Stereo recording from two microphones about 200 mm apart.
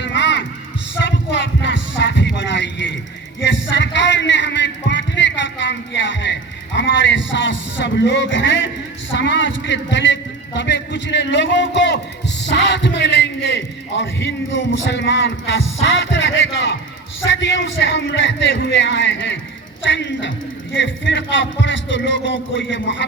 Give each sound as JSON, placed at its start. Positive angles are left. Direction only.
{"t": 0.0, "sound": "heart sounds", "side_deg": 60}
{"t": 3.4, "sound": "a sound", "side_deg": 65}
{"t": 12.4, "sound": "a man's voice", "side_deg": 60}